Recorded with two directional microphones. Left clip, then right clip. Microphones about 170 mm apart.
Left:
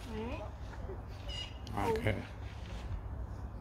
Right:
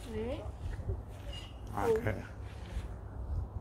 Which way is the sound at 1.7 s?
25° left (ahead or behind).